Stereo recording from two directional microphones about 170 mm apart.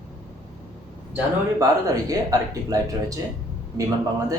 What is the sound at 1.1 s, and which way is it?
Speech, 20° right (ahead or behind).